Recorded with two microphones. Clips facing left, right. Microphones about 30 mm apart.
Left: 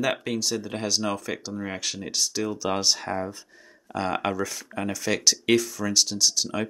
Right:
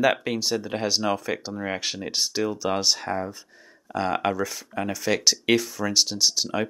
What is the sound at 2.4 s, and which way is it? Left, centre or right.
Speech, centre.